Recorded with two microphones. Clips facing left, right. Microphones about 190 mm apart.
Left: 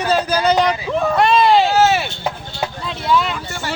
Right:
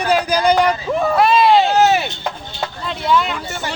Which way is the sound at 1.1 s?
Centre (ahead or behind).